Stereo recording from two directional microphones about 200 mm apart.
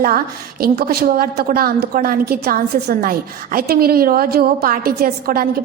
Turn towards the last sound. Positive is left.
turn(degrees=-45)  # may be behind; listen again after turning